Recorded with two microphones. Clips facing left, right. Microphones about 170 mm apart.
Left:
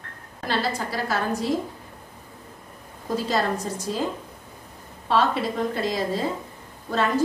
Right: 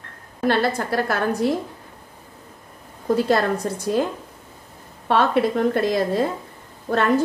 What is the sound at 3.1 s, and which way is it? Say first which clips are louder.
Speech: right 4 dB; 60° right (ahead or behind).